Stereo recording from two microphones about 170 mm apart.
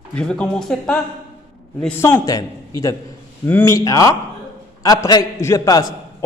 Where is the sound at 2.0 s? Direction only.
20° left (ahead or behind).